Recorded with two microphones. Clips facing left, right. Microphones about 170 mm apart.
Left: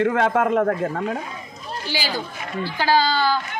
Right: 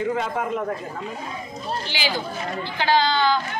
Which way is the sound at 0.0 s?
75° left (ahead or behind).